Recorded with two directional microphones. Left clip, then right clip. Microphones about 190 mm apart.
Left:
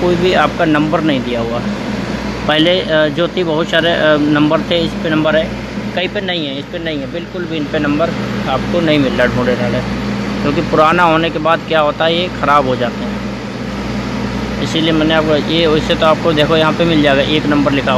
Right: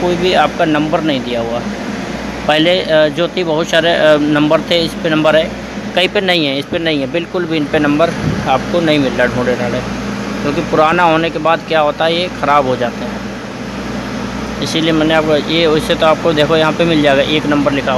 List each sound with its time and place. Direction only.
0.2 s speech: centre (ahead or behind)
2.4 s speech: centre (ahead or behind)
5.9 s speech: 25° right (ahead or behind)
8.9 s speech: 5° right (ahead or behind)
14.7 s speech: 10° right (ahead or behind)